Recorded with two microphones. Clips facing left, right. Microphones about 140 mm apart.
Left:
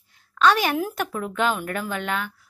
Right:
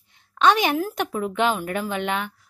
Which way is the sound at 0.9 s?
10° right (ahead or behind).